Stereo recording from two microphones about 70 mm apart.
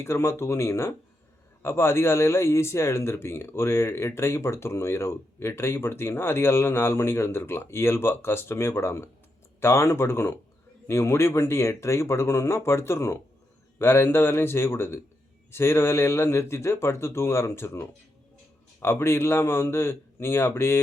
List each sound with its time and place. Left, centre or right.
0.0 s a man's voice: left